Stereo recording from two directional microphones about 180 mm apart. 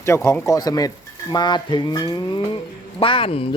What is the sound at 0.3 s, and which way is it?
Stir, 15° left (ahead or behind).